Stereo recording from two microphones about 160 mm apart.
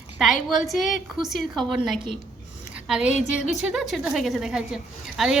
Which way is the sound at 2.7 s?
5° right (ahead or behind).